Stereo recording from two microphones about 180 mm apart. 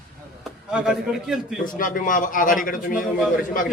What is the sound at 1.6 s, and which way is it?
A man's voice, 50° left (ahead or behind).